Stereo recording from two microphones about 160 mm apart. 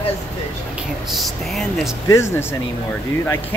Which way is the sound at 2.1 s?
15° left (ahead or behind).